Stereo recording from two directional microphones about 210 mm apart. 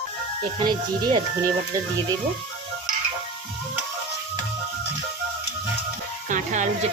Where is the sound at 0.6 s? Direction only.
20° right (ahead or behind).